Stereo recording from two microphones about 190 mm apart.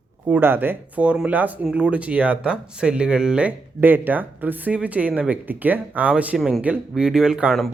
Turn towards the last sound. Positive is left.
turn(degrees=0)  # may be behind; listen again after turning